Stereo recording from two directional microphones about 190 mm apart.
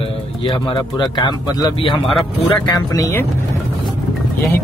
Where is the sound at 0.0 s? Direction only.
25° left (ahead or behind).